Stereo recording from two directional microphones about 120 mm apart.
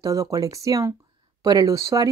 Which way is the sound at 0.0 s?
25° right (ahead or behind).